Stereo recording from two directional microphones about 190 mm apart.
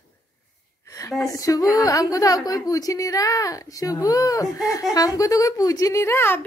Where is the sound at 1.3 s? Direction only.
15° left (ahead or behind).